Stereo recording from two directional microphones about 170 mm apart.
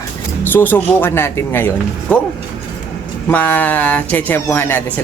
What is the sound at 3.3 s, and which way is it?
Speech, 10° left (ahead or behind).